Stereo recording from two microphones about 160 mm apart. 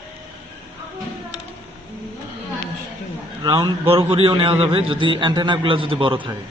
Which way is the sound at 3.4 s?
30° right (ahead or behind).